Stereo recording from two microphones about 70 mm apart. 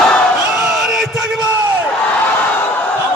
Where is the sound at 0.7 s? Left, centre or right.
Centre.